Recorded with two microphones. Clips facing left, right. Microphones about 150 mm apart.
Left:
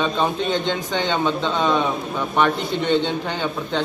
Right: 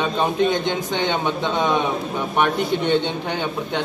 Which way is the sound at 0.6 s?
15° right (ahead or behind).